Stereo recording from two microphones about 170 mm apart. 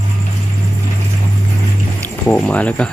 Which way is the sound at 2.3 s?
10° left (ahead or behind).